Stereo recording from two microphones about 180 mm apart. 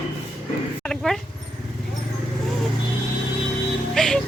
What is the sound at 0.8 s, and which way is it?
Dog, 5° left (ahead or behind).